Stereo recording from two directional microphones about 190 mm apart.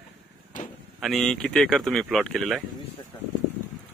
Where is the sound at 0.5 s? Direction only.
45° left (ahead or behind).